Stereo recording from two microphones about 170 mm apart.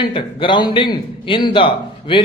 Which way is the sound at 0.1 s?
30° left (ahead or behind).